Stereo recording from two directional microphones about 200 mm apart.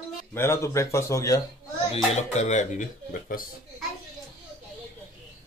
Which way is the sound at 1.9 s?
35° left (ahead or behind).